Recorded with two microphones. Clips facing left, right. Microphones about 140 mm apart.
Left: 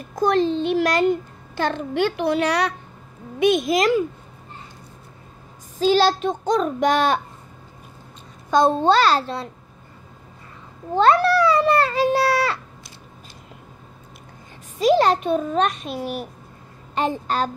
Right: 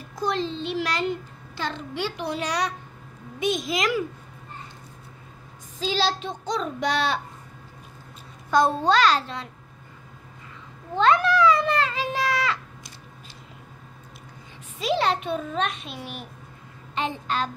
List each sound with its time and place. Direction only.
0.1 s a child's voice: 50° left (ahead or behind)
5.8 s a child's voice: 50° left (ahead or behind)
8.5 s a child's voice: 25° left (ahead or behind)
11.0 s cat: 40° left (ahead or behind)
14.8 s a child's voice: 45° left (ahead or behind)